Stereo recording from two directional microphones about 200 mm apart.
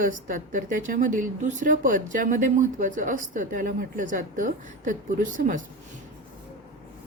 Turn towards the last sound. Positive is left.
turn(degrees=-40)  # may be behind; listen again after turning